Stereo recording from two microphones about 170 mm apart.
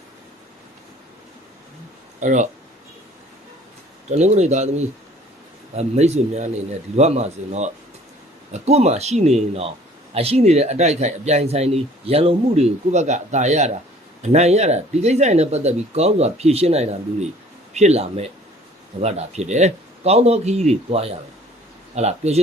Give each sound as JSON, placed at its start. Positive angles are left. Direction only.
{"t": 2.2, "sound": "speech", "side_deg": -45}
{"t": 4.1, "sound": "speech", "side_deg": -40}